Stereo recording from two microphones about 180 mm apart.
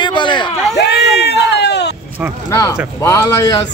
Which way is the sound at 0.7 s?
70° left (ahead or behind).